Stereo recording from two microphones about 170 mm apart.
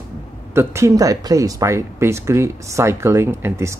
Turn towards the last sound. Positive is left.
turn(degrees=-15)  # may be behind; listen again after turning